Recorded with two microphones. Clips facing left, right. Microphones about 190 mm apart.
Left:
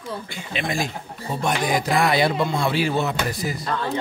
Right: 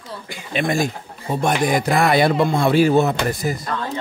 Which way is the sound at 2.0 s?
50° right (ahead or behind).